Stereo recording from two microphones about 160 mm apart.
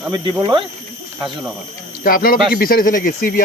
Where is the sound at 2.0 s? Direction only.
60° left (ahead or behind).